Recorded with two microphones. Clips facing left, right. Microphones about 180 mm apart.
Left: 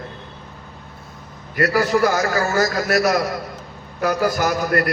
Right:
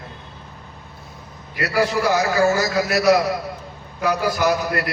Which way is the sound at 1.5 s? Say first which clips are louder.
Left 2 dB; 55° left (ahead or behind).